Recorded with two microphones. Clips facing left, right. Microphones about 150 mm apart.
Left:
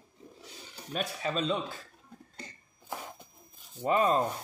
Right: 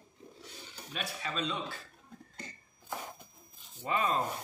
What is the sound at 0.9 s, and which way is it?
Speech, 45° left (ahead or behind).